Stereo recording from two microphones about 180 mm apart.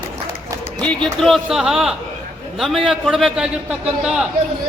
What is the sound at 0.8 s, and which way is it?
A man's voice, 5° left (ahead or behind).